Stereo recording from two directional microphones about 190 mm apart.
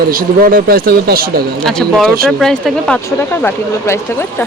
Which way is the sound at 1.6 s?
5° left (ahead or behind).